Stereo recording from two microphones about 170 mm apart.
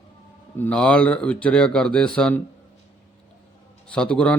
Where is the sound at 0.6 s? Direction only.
5° left (ahead or behind).